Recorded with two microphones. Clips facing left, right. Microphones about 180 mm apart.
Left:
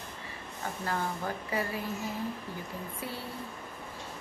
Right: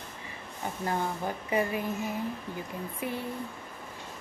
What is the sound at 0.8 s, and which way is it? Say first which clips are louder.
Speech: right 3 dB; 20° right (ahead or behind).